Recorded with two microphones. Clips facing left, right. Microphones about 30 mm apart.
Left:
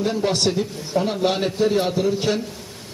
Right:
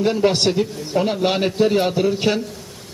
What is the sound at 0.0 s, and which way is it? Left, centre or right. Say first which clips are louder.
A man's voice: right 4 dB; right.